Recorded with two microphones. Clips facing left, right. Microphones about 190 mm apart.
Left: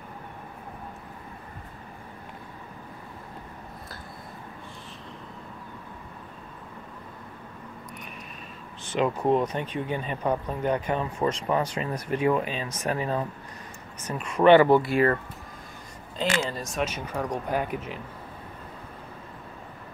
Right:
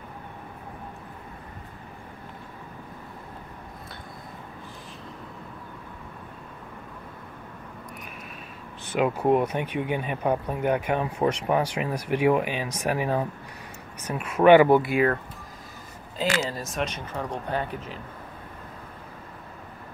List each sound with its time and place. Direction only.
8.9 s speech: 10° right (ahead or behind)
14.9 s speech: centre (ahead or behind)
16.2 s speech: 5° right (ahead or behind); by 17.9 s 10° left (ahead or behind)